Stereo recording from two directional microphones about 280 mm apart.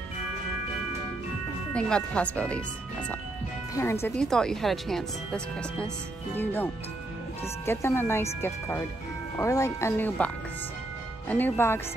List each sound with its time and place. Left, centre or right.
1.7 s speech: centre